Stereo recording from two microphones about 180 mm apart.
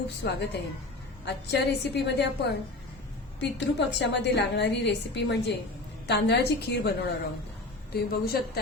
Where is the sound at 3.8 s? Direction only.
75° left (ahead or behind).